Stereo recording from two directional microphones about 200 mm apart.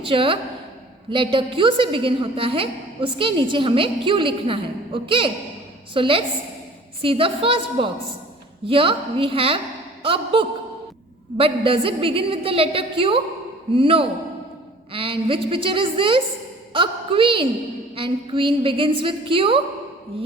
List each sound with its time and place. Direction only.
0.0 s a woman's voice: 25° right (ahead or behind)